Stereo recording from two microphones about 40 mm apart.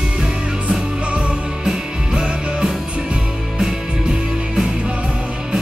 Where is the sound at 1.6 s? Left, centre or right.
Centre.